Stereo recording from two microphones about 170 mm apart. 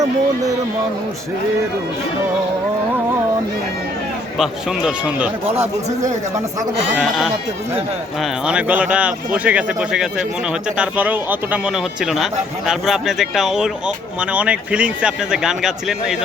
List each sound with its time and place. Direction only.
4.4 s speech: 5° right (ahead or behind)
5.5 s speech: 40° right (ahead or behind)
8.2 s speech: 5° right (ahead or behind)